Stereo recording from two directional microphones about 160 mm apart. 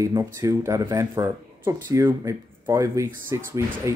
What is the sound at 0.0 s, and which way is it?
Speech, 20° right (ahead or behind).